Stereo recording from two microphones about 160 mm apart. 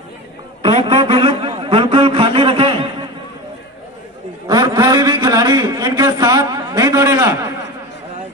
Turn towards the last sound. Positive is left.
turn(degrees=-20)  # may be behind; listen again after turning